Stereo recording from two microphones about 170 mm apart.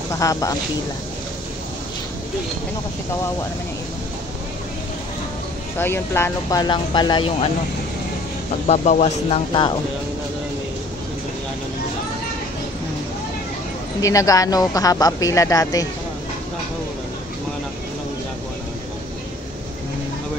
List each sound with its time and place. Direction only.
0.1 s speech: 20° left (ahead or behind)
5.8 s speech: 15° left (ahead or behind); by 7.4 s 30° left (ahead or behind)
8.6 s speech: 40° left (ahead or behind)
9.5 s speech: 25° left (ahead or behind)
14.0 s speech: 20° left (ahead or behind)